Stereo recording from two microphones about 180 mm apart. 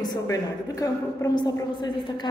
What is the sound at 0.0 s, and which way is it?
A woman's voice, 20° left (ahead or behind).